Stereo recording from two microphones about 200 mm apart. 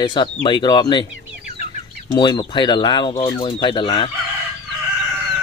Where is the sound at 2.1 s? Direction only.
20° left (ahead or behind).